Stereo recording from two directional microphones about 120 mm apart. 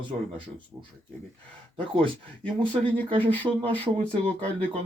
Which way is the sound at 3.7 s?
15° left (ahead or behind).